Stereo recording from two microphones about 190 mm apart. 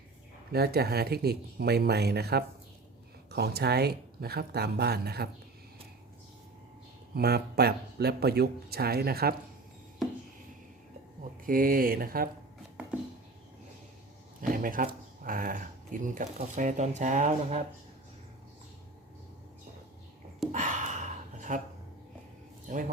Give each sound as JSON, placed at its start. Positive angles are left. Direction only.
{"t": 0.5, "sound": "speech", "side_deg": -55}
{"t": 7.1, "sound": "speech", "side_deg": -55}
{"t": 11.4, "sound": "speech", "side_deg": -45}
{"t": 14.5, "sound": "speech", "side_deg": -45}
{"t": 20.5, "sound": "gasp", "side_deg": -40}
{"t": 22.7, "sound": "speech", "side_deg": -40}